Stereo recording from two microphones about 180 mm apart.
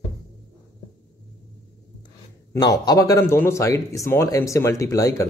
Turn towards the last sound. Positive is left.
turn(degrees=20)  # may be behind; listen again after turning